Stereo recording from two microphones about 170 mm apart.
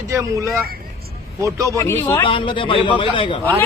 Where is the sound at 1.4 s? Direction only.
20° right (ahead or behind).